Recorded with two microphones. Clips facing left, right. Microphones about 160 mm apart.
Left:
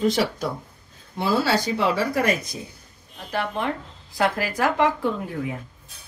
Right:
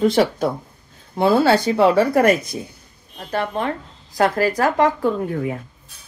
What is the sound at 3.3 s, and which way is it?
Speech, 40° right (ahead or behind).